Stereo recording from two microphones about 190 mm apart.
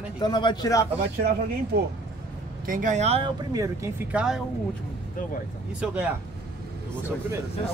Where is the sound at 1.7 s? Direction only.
60° right (ahead or behind).